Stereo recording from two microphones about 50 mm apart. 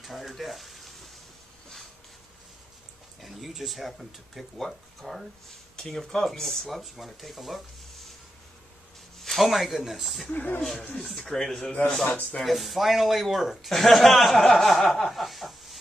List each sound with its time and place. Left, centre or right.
0.0 s frying: centre
3.2 s a man's voice: centre
9.2 s a man's voice: centre
10.3 s speech: left
10.6 s a man's voice: centre
11.9 s speech: centre
12.4 s a man's voice: centre